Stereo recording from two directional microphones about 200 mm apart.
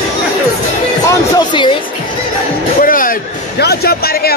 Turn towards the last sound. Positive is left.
turn(degrees=50)  # may be behind; listen again after turning